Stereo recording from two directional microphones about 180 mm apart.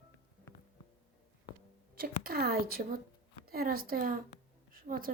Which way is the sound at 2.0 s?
55° right (ahead or behind).